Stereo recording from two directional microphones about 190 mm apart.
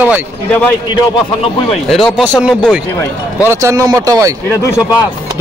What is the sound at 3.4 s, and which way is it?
Speech, 15° right (ahead or behind).